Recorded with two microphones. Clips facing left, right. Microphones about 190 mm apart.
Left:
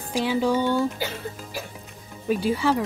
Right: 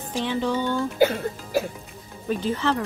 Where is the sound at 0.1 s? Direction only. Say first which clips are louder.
Left 3 dB; 10° left (ahead or behind).